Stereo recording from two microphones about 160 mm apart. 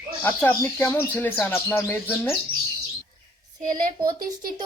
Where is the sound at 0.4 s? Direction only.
15° left (ahead or behind).